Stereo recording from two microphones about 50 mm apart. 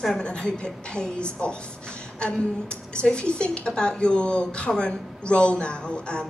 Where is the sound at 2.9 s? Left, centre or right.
Centre.